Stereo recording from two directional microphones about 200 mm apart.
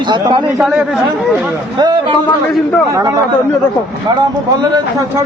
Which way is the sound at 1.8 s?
20° right (ahead or behind).